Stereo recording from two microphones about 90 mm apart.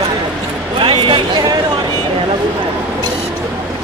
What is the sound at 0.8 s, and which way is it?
Speech, 70° right (ahead or behind).